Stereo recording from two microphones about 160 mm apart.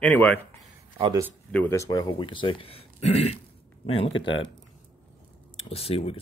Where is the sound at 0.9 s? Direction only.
30° right (ahead or behind).